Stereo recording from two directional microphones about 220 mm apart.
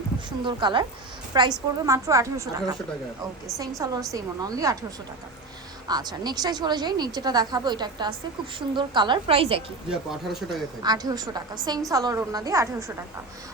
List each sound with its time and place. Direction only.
0.4 s a woman's voice: 20° right (ahead or behind)
3.8 s a woman's voice: 15° right (ahead or behind)
5.9 s speech: 20° right (ahead or behind)
9.9 s speech: centre (ahead or behind)
10.8 s a woman's voice: 15° right (ahead or behind)